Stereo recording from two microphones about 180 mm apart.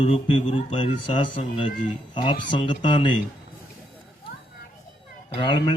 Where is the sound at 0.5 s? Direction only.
30° left (ahead or behind).